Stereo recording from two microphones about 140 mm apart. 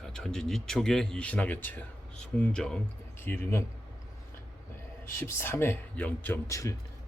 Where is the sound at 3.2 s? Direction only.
15° left (ahead or behind).